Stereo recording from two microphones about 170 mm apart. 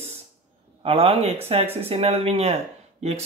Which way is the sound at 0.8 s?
35° right (ahead or behind).